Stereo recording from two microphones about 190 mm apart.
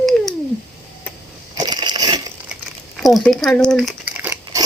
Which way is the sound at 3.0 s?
Centre (ahead or behind).